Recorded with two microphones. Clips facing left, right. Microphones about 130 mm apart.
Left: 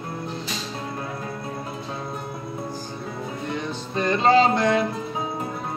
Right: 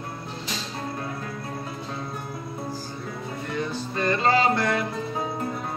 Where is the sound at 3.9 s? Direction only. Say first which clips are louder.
Left 4 dB; 20° left (ahead or behind).